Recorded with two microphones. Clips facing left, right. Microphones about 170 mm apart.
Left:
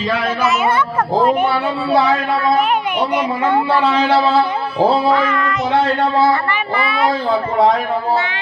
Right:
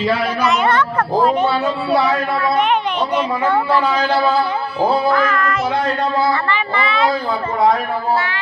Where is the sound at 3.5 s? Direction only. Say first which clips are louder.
Left 2 dB; 25° left (ahead or behind).